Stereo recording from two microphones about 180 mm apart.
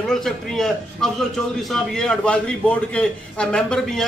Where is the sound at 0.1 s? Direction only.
Centre (ahead or behind).